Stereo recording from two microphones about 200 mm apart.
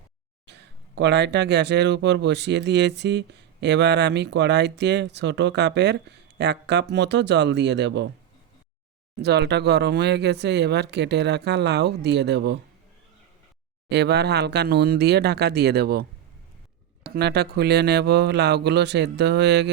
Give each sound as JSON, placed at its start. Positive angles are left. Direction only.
{"t": 0.4, "sound": "speech", "side_deg": -60}
{"t": 9.1, "sound": "speech", "side_deg": -55}
{"t": 13.9, "sound": "speech", "side_deg": -55}